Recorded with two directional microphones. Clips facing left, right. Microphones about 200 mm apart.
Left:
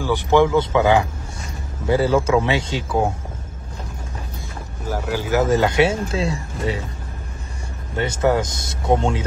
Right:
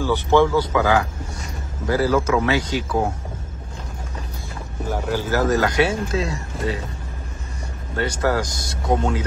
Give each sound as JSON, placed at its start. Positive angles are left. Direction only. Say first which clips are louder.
{"t": 0.0, "sound": "speech", "louder": "left 1 dB", "side_deg": 15}
{"t": 4.8, "sound": "speech", "louder": "even", "side_deg": 5}
{"t": 5.5, "sound": "speech", "louder": "left 3 dB", "side_deg": 25}
{"t": 8.0, "sound": "speech", "louder": "left 3 dB", "side_deg": 25}